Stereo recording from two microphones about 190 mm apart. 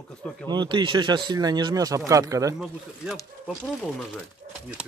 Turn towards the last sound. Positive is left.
turn(degrees=-5)  # may be behind; listen again after turning